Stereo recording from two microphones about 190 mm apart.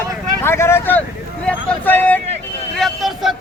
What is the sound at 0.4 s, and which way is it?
Speech, 15° left (ahead or behind).